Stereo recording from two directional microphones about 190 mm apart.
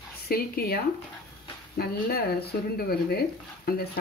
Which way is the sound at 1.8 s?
55° left (ahead or behind).